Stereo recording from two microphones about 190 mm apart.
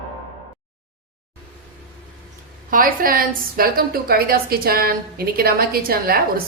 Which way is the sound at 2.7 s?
45° right (ahead or behind).